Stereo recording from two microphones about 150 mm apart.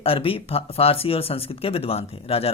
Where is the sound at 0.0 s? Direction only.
40° left (ahead or behind).